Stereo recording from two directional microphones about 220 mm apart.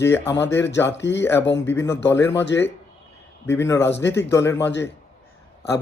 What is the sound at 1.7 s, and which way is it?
Speech, 10° left (ahead or behind).